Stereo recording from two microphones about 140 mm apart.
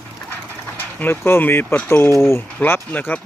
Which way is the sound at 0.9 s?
15° left (ahead or behind).